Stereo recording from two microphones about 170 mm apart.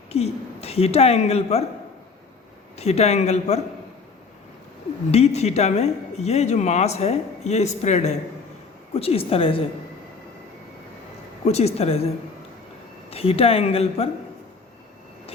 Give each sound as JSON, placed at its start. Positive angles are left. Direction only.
{"t": 0.1, "sound": "a woman's voice", "side_deg": 35}
{"t": 2.7, "sound": "speech", "side_deg": 40}
{"t": 5.1, "sound": "speech", "side_deg": 40}
{"t": 11.4, "sound": "speech", "side_deg": 35}
{"t": 13.1, "sound": "speech", "side_deg": 35}